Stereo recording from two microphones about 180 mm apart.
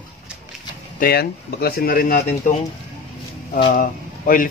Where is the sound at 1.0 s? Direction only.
60° left (ahead or behind).